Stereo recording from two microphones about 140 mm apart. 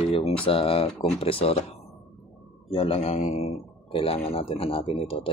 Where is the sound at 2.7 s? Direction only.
40° left (ahead or behind).